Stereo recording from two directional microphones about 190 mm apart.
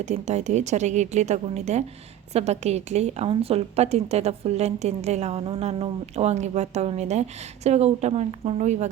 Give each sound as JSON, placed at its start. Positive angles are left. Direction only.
{"t": 0.0, "sound": "a woman's voice", "side_deg": -35}